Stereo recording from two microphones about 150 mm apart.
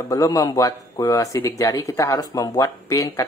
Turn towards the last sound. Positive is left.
turn(degrees=25)  # may be behind; listen again after turning